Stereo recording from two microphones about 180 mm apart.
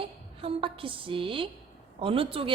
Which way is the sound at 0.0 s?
30° right (ahead or behind).